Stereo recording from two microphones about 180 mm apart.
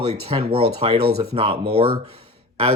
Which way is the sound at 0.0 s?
35° right (ahead or behind).